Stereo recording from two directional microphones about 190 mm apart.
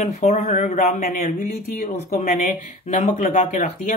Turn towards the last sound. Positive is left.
turn(degrees=45)  # may be behind; listen again after turning